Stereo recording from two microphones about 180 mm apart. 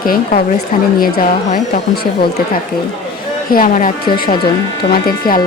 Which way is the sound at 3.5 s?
50° left (ahead or behind).